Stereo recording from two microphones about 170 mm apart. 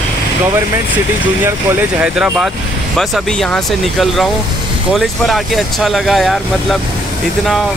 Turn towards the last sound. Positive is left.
turn(degrees=0)  # may be behind; listen again after turning